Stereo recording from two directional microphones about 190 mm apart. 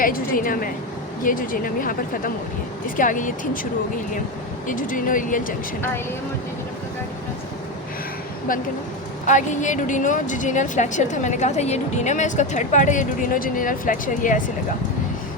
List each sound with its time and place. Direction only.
0.0 s speech: 50° left (ahead or behind)
4.7 s speech: 45° left (ahead or behind)
9.2 s a woman's voice: 40° left (ahead or behind)